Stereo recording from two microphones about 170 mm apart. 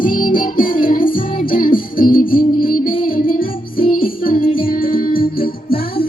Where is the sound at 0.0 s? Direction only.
55° left (ahead or behind).